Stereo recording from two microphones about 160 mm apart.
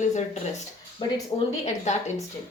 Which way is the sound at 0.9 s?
40° left (ahead or behind).